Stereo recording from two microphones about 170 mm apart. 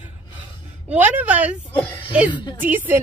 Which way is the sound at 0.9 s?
10° right (ahead or behind).